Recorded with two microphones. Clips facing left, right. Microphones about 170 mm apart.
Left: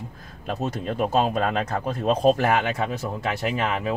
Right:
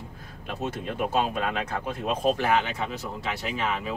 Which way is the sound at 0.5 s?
40° left (ahead or behind).